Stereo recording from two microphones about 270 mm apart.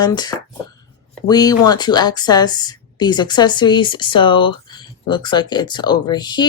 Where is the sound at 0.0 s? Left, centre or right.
Centre.